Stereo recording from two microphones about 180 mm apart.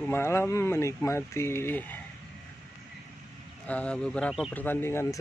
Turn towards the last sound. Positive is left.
turn(degrees=10)  # may be behind; listen again after turning